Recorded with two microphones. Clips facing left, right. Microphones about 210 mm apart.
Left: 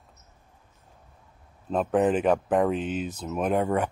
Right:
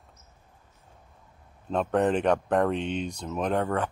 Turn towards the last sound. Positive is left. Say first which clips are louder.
# left 2 dB
turn(degrees=10)  # may be behind; listen again after turning